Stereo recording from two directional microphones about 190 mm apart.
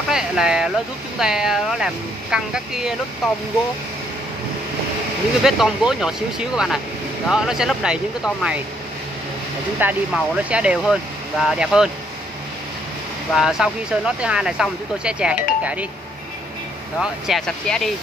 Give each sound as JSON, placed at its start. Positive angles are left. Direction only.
{"t": 0.1, "sound": "speech", "side_deg": -5}
{"t": 5.4, "sound": "speech", "side_deg": 0}
{"t": 9.8, "sound": "speech", "side_deg": -5}
{"t": 13.3, "sound": "speech", "side_deg": -5}
{"t": 17.0, "sound": "speech", "side_deg": 0}